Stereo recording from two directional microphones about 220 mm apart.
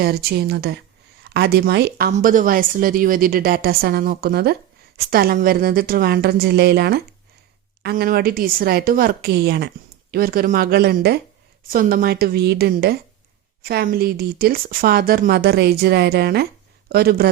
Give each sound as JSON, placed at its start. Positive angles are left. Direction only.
{"t": 0.0, "sound": "speech", "side_deg": -45}